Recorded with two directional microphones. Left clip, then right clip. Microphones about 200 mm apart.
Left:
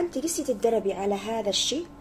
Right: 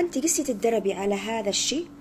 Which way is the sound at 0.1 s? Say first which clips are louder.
Right 2 dB; 30° right (ahead or behind).